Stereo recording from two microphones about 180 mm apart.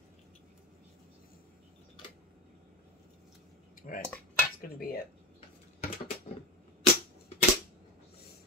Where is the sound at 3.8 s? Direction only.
50° left (ahead or behind).